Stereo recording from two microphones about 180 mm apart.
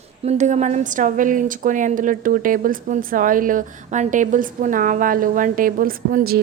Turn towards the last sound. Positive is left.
turn(degrees=-55)  # may be behind; listen again after turning